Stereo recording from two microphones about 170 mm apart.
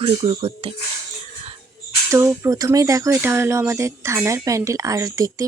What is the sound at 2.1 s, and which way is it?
Speech, 15° right (ahead or behind).